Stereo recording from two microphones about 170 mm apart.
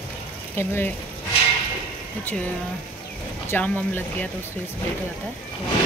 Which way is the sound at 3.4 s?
10° left (ahead or behind).